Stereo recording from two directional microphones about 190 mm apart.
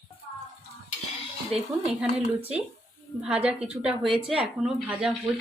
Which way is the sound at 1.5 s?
35° right (ahead or behind).